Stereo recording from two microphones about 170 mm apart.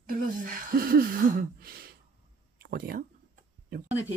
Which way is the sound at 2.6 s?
60° right (ahead or behind).